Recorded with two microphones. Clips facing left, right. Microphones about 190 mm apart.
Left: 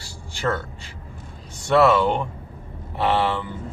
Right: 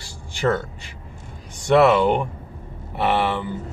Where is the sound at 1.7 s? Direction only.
20° right (ahead or behind).